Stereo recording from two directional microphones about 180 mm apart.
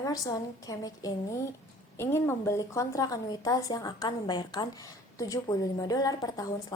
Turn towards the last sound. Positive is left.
turn(degrees=20)  # may be behind; listen again after turning